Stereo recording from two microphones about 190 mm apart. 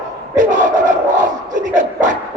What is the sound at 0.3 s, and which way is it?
Battle cry, 40° right (ahead or behind).